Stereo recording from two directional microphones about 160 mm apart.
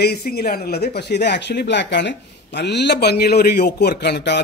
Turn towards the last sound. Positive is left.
turn(degrees=90)